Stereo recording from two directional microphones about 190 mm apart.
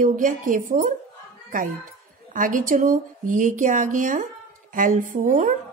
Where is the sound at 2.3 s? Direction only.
45° right (ahead or behind).